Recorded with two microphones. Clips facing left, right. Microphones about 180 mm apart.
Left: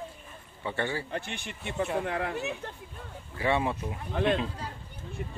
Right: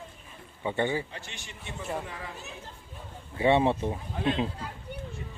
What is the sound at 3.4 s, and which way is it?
Speech, 25° right (ahead or behind).